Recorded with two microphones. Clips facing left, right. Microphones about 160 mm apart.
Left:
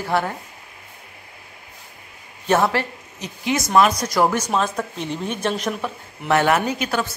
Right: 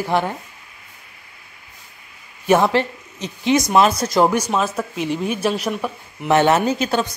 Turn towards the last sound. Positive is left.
turn(degrees=-30)  # may be behind; listen again after turning